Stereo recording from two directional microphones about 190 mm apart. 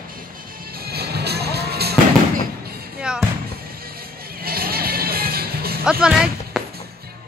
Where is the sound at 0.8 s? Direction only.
55° right (ahead or behind).